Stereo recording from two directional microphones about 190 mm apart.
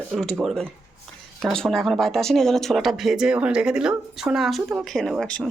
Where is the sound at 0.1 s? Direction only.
Centre (ahead or behind).